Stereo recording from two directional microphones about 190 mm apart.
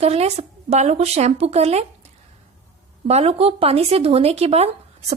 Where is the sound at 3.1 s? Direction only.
35° right (ahead or behind).